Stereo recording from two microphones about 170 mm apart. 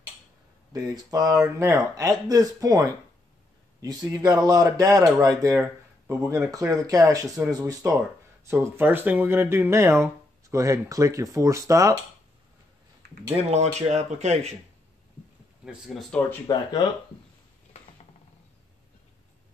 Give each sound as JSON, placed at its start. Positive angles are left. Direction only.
{"t": 0.7, "sound": "speech", "side_deg": -20}
{"t": 13.4, "sound": "speech", "side_deg": -40}
{"t": 15.6, "sound": "speech", "side_deg": -5}
{"t": 16.4, "sound": "speech", "side_deg": 25}